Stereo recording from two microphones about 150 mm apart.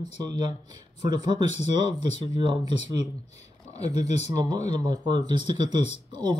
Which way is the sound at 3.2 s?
50° left (ahead or behind).